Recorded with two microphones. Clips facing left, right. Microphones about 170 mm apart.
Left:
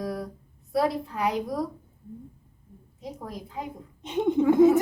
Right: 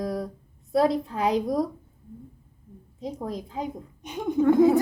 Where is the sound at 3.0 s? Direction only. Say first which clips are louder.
Right 5 dB; 20° right (ahead or behind).